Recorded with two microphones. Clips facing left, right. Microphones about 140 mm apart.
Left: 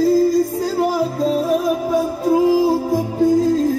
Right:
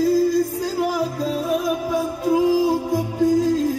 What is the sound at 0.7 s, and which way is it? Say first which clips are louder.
Music: left 4 dB; 30° left (ahead or behind).